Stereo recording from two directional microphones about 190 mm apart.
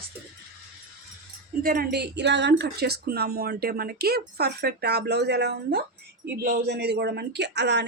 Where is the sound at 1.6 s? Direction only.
50° right (ahead or behind).